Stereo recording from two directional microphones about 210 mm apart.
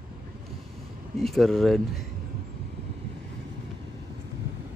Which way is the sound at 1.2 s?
Centre (ahead or behind).